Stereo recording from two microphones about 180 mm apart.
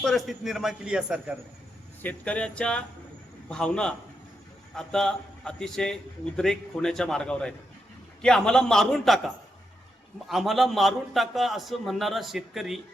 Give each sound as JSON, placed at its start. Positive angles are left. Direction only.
{"t": 0.0, "sound": "a man's voice", "side_deg": 0}
{"t": 2.0, "sound": "a man's voice", "side_deg": 10}